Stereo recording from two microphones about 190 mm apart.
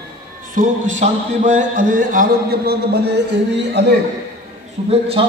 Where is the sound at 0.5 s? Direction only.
40° right (ahead or behind); by 3.9 s 60° right (ahead or behind).